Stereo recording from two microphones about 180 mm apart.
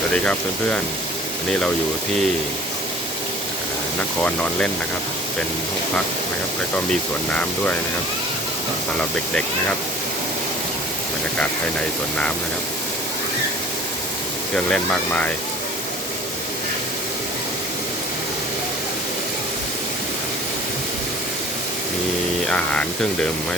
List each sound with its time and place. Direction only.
14.5 s speech: 5° left (ahead or behind)
22.4 s speech: 5° left (ahead or behind)